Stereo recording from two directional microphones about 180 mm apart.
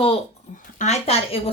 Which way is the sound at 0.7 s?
40° left (ahead or behind).